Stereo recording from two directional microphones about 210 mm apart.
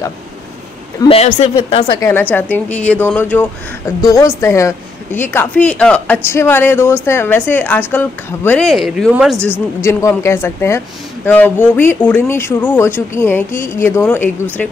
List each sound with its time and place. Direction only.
0.9 s speech: 25° left (ahead or behind)
2.0 s speech: 10° left (ahead or behind)